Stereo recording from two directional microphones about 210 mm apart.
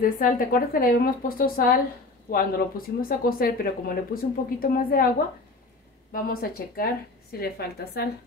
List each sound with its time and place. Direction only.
0.0 s speech: 40° left (ahead or behind)
6.1 s speech: 45° left (ahead or behind)